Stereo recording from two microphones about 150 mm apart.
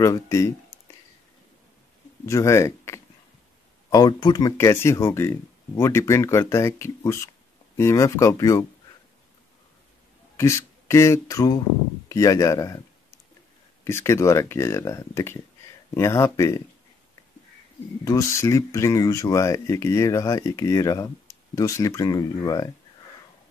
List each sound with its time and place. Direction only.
0.0 s speech: 20° left (ahead or behind)
2.2 s speech: 20° left (ahead or behind)
10.3 s speech: 20° left (ahead or behind)
13.8 s speech: 20° left (ahead or behind)
18.0 s speech: 20° left (ahead or behind)